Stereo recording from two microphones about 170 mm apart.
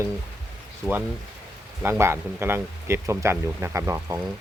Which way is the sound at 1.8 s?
15° right (ahead or behind).